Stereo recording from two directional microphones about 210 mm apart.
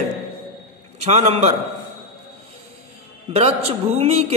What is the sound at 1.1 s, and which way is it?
Speech, 30° right (ahead or behind).